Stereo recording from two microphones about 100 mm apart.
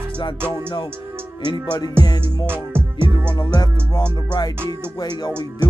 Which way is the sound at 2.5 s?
20° right (ahead or behind).